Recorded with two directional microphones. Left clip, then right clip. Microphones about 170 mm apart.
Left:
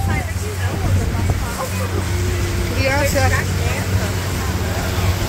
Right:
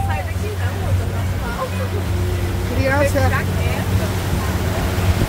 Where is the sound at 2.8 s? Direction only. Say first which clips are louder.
Even; 25° right (ahead or behind).